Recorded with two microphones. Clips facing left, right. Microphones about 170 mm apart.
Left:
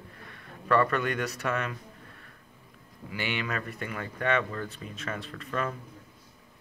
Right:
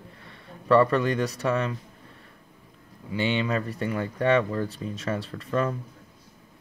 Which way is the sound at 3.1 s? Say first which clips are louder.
Right 7 dB; 25° right (ahead or behind).